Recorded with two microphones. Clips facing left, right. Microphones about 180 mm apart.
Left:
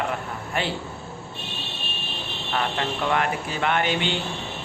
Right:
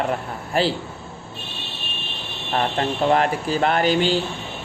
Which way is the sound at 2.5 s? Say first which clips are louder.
Right 4 dB; 35° right (ahead or behind).